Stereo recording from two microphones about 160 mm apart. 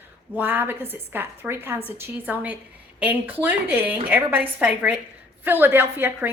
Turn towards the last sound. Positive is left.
turn(degrees=-15)  # may be behind; listen again after turning